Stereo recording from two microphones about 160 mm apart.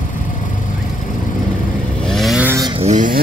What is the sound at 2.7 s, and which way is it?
Vehicle, 45° right (ahead or behind).